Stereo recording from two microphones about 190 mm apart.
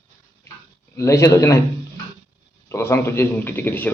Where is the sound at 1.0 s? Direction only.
15° left (ahead or behind).